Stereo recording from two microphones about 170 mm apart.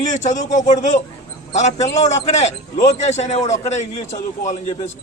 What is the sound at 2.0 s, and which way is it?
A man's voice, 40° left (ahead or behind).